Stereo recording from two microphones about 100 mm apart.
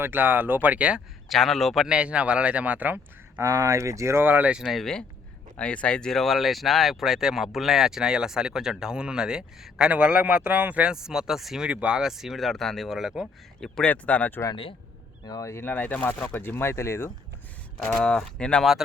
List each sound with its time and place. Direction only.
0.0 s speech: 20° right (ahead or behind)
1.3 s speech: centre (ahead or behind); by 3.4 s 20° right (ahead or behind)
3.4 s speech: 35° right (ahead or behind); by 13.2 s 5° right (ahead or behind)
13.6 s speech: 10° left (ahead or behind)
15.2 s speech: 40° left (ahead or behind)
15.6 s speech: 15° left (ahead or behind)
18.0 s speech: 10° left (ahead or behind)